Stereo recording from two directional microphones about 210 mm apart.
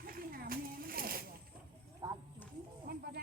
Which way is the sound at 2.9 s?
45° right (ahead or behind).